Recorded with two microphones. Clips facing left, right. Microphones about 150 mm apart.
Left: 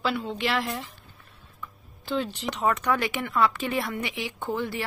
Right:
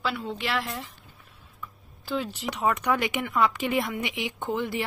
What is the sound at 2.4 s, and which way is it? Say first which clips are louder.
Speech: even; 10° right (ahead or behind).